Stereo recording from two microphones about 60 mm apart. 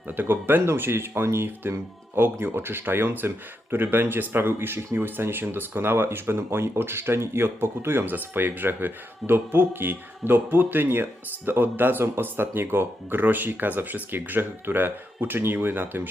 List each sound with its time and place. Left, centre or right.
0.1 s speech: right